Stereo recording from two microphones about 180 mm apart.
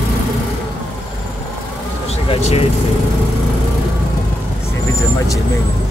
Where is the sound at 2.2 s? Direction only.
35° left (ahead or behind).